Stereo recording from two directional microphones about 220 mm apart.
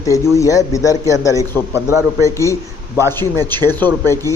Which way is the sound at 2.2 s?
15° left (ahead or behind).